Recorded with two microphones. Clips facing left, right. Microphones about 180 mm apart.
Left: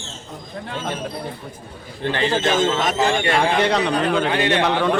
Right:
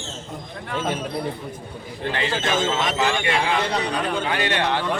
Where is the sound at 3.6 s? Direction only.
85° left.